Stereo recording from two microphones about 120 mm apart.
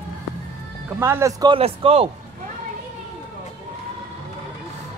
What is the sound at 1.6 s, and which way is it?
Speech, 55° right (ahead or behind).